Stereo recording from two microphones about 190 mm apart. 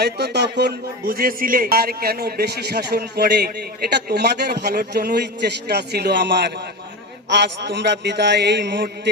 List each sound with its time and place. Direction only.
0.0 s a man's voice: 60° right (ahead or behind)